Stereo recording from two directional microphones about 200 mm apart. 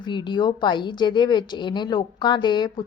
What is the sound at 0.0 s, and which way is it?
A child's voice, 20° left (ahead or behind).